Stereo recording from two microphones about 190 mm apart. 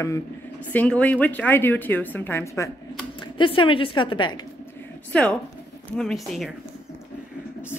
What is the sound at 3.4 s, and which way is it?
Speech, 25° left (ahead or behind).